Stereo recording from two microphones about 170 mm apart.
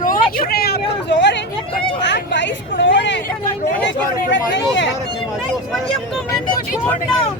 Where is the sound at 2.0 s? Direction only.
90° left.